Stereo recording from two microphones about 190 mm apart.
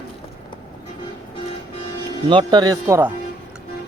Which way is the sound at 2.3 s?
25° right (ahead or behind).